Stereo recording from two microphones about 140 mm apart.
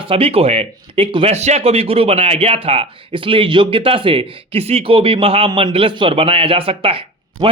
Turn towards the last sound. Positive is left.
turn(degrees=-40)  # may be behind; listen again after turning